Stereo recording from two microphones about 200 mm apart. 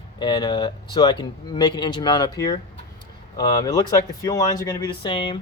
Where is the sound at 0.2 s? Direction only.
20° left (ahead or behind).